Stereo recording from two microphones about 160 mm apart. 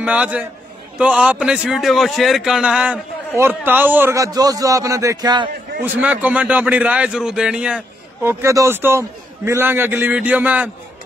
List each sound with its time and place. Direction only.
0.0 s a man's voice: 10° right (ahead or behind); by 5.5 s 25° right (ahead or behind)
5.8 s a man's voice: 10° right (ahead or behind)